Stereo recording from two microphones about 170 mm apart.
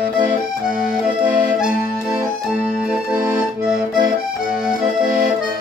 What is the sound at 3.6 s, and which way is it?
Accordion, 5° right (ahead or behind).